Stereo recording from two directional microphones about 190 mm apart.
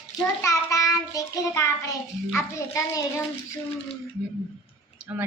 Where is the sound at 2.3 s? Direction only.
15° left (ahead or behind).